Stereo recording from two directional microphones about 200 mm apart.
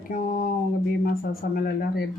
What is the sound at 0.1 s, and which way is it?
Speech, 45° left (ahead or behind).